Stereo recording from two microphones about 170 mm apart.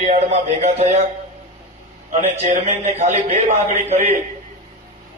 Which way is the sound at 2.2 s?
40° right (ahead or behind).